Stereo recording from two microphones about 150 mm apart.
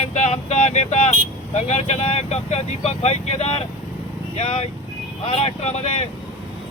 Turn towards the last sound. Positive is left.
turn(degrees=45)  # may be behind; listen again after turning